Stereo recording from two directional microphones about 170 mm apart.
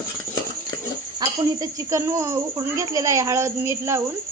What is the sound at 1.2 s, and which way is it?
Speech, 20° right (ahead or behind).